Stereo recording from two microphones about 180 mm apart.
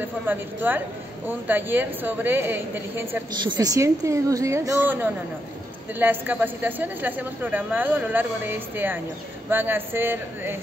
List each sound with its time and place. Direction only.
0.0 s a woman's voice: 10° right (ahead or behind)